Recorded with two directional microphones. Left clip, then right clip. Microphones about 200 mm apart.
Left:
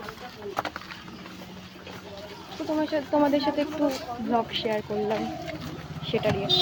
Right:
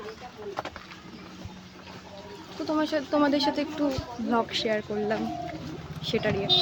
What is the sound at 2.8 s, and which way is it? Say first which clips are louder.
A woman's voice: left 1 dB; 20° right (ahead or behind).